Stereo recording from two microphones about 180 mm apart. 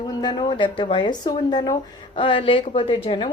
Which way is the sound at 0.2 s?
25° left (ahead or behind).